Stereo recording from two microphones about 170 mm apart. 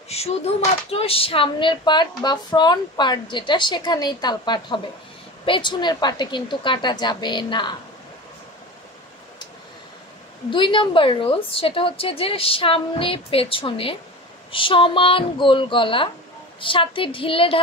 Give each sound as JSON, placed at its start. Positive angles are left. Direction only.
{"t": 0.1, "sound": "a sound", "side_deg": 35}
{"t": 0.8, "sound": "speech", "side_deg": 35}
{"t": 10.5, "sound": "a woman's voice", "side_deg": 30}